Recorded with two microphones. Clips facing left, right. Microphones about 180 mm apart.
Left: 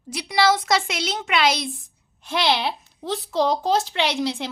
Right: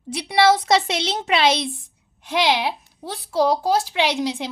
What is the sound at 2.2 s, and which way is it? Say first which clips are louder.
A woman's voice: right 2 dB; 15° right (ahead or behind).